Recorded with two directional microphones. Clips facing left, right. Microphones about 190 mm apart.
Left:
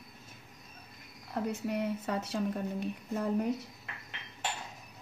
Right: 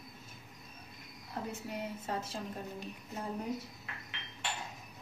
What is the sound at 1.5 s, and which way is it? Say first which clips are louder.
Speech: left 9 dB; 65° left (ahead or behind).